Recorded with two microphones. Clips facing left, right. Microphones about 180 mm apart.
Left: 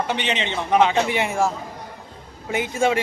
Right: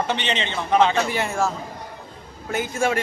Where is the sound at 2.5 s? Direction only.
20° left (ahead or behind).